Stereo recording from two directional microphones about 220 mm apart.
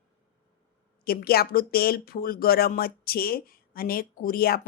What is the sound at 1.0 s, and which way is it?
A woman's voice, 45° left (ahead or behind).